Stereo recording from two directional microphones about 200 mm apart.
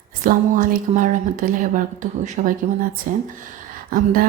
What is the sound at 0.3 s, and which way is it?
A woman's voice, 40° right (ahead or behind).